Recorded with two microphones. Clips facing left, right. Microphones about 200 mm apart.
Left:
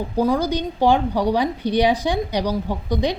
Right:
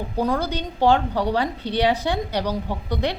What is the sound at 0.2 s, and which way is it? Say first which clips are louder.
A woman's voice: left 4 dB; 15° left (ahead or behind).